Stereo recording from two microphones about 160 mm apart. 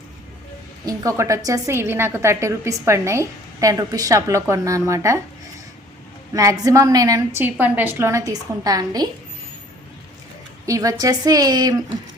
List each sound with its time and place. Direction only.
0.9 s a woman's voice: 20° right (ahead or behind)
6.3 s a woman's voice: 20° right (ahead or behind)
10.7 s a woman's voice: 20° right (ahead or behind)